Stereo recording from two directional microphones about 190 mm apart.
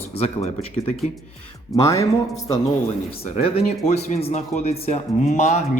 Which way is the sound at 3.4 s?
35° left (ahead or behind).